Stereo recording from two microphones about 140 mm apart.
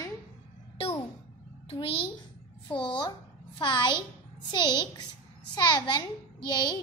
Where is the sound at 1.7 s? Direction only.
40° left (ahead or behind).